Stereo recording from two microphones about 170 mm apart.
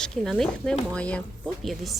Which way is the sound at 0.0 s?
Centre (ahead or behind).